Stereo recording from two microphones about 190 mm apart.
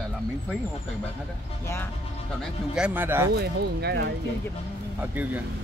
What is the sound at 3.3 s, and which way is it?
Speech, 55° right (ahead or behind).